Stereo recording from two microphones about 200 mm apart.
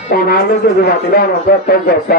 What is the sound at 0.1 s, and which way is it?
Speech, 50° left (ahead or behind).